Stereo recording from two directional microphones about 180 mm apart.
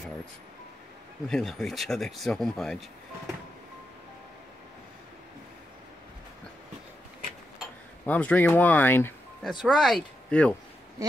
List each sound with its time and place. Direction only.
1.3 s speech: centre (ahead or behind)
8.0 s speech: 10° left (ahead or behind)
9.4 s speech: centre (ahead or behind)
11.0 s a sound: 20° right (ahead or behind)